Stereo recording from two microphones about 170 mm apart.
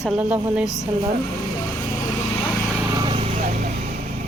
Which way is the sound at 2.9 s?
25° right (ahead or behind).